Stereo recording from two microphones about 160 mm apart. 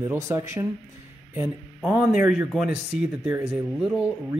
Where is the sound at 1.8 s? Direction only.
10° right (ahead or behind).